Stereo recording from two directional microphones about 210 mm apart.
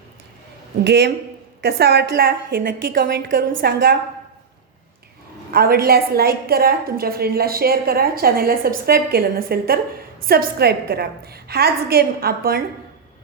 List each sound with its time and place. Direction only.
0.9 s a woman's voice: 50° right (ahead or behind)
5.5 s a woman's voice: 45° right (ahead or behind)